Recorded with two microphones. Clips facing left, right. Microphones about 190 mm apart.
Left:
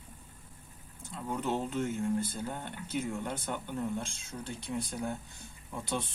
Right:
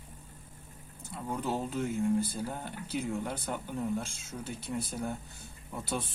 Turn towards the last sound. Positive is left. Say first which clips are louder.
# even
turn(degrees=-5)  # may be behind; listen again after turning